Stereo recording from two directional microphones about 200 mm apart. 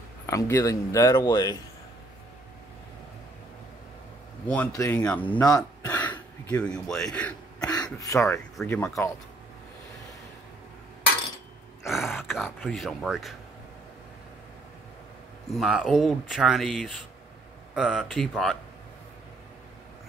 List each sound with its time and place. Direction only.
0.3 s speech: 15° left (ahead or behind)
4.5 s speech: 10° left (ahead or behind)
7.6 s speech: 20° left (ahead or behind)
11.8 s speech: centre (ahead or behind)
15.5 s speech: centre (ahead or behind)